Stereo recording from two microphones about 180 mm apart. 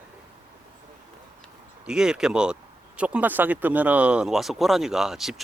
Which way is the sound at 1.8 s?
5° right (ahead or behind).